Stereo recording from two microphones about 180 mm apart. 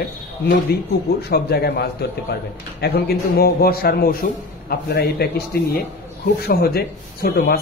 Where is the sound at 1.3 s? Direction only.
60° left (ahead or behind).